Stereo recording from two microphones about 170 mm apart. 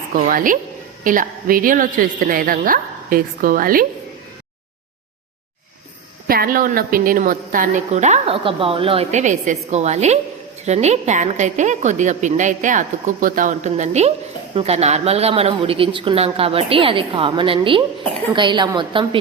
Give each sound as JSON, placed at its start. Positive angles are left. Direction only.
{"t": 0.2, "sound": "a woman's voice", "side_deg": -55}
{"t": 6.2, "sound": "a woman's voice", "side_deg": -60}